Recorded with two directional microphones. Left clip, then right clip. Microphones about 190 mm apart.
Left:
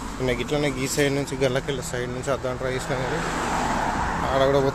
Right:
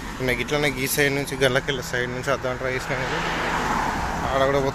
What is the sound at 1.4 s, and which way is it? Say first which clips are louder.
Speech: right 4 dB; centre (ahead or behind).